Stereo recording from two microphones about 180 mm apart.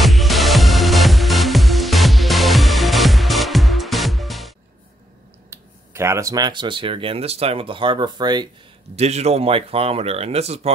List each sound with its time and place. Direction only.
0.0 s music: centre (ahead or behind)
5.5 s speech: 15° right (ahead or behind)
8.9 s speech: 35° right (ahead or behind)